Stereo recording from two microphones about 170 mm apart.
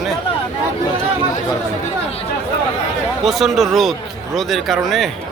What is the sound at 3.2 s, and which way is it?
Speech, centre (ahead or behind).